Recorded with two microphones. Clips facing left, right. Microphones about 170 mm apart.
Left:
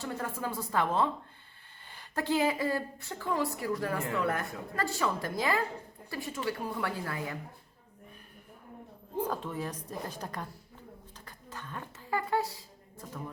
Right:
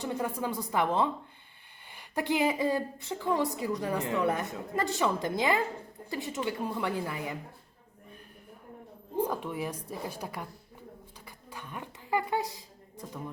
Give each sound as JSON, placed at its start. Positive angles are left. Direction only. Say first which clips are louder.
{"t": 0.0, "sound": "a woman's voice", "louder": "right 3 dB", "side_deg": -15}
{"t": 9.2, "sound": "a woman's voice", "louder": "right 2 dB", "side_deg": -10}
{"t": 11.3, "sound": "a sound", "louder": "even", "side_deg": -10}